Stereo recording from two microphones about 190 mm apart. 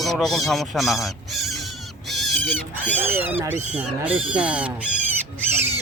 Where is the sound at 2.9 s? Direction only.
10° right (ahead or behind).